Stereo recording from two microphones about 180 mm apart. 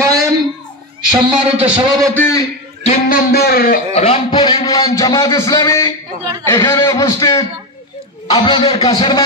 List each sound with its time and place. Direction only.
0.0 s a sound: 20° right (ahead or behind)
1.1 s a man's voice: 10° right (ahead or behind)
2.1 s a man's voice: 15° left (ahead or behind)
2.8 s speech: 45° left (ahead or behind)
3.9 s speech: 35° left (ahead or behind)
4.3 s a man's voice: 25° left (ahead or behind)